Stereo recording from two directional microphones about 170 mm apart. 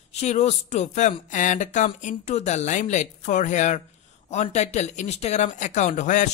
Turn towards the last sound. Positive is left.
turn(degrees=45)  # may be behind; listen again after turning